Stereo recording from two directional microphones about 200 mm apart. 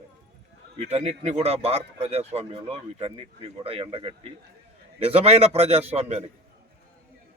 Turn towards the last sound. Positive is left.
turn(degrees=-30)  # may be behind; listen again after turning